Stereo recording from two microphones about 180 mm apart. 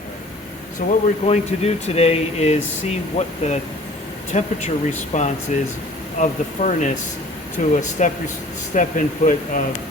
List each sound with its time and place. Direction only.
0.9 s speech: 35° left (ahead or behind)